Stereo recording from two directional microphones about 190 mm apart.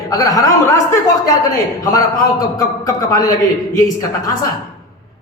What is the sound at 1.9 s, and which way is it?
A man's voice, 20° left (ahead or behind).